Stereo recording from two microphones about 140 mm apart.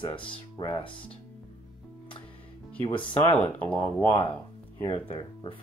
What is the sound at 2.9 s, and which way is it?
Speech, 35° left (ahead or behind).